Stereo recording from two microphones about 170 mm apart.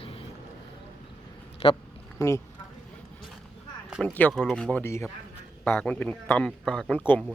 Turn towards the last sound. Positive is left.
turn(degrees=5)  # may be behind; listen again after turning